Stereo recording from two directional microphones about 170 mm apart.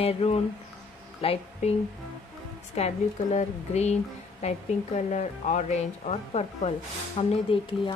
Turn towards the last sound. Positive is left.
turn(degrees=35)  # may be behind; listen again after turning